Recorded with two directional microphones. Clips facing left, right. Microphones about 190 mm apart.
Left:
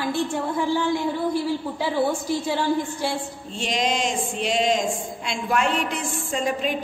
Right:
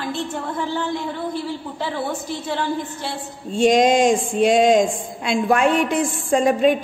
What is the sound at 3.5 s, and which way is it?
A woman's voice, 50° right (ahead or behind).